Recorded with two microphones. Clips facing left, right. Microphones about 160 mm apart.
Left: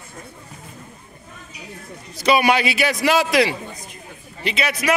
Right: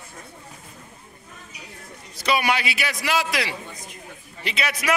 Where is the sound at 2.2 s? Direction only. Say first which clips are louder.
Left 6 dB; 15° left (ahead or behind).